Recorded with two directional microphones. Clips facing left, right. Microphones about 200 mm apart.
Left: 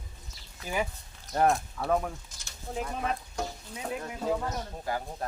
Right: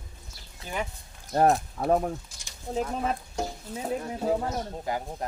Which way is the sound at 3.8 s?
35° right (ahead or behind).